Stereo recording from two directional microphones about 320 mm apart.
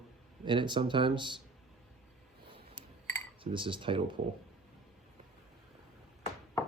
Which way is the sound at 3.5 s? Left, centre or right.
Centre.